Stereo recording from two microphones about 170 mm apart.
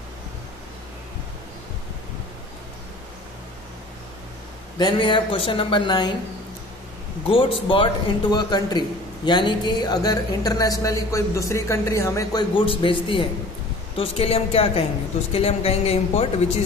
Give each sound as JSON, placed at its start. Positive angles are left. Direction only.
{"t": 4.7, "sound": "a man's voice", "side_deg": 25}
{"t": 7.2, "sound": "a man's voice", "side_deg": 30}